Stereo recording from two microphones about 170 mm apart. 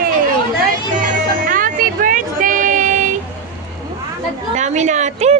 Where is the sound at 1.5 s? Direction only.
55° right (ahead or behind).